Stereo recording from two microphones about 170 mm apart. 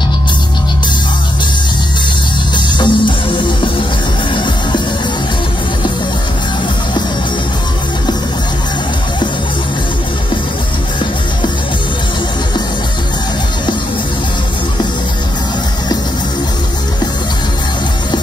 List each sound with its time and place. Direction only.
2.5 s music: 30° left (ahead or behind)